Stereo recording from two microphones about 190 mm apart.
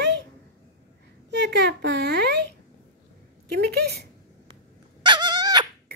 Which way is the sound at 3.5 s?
60° right (ahead or behind).